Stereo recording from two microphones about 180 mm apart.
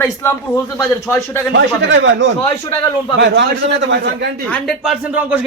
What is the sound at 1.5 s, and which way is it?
A man's voice, 90° right.